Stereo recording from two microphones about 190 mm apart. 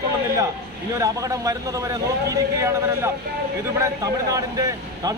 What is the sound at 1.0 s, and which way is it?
A man's voice, 15° right (ahead or behind).